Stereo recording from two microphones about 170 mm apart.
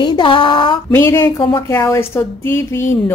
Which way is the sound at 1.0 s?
15° left (ahead or behind).